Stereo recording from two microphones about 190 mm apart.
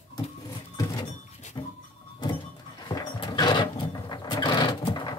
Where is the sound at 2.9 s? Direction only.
20° left (ahead or behind).